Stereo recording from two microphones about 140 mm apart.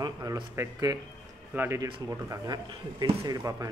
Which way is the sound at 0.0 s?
30° right (ahead or behind).